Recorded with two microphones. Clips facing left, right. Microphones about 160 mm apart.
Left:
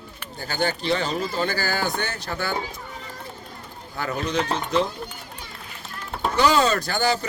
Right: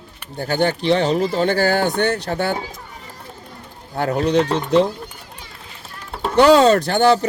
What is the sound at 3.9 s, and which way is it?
Speech, 70° right (ahead or behind).